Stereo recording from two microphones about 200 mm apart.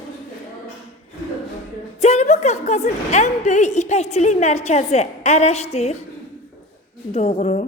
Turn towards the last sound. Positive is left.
turn(degrees=35)  # may be behind; listen again after turning